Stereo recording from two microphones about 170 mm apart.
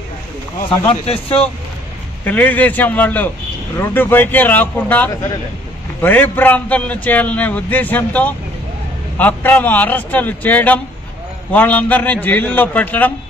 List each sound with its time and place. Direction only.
0.7 s speech: 30° left (ahead or behind)
2.2 s a man's voice: 10° left (ahead or behind)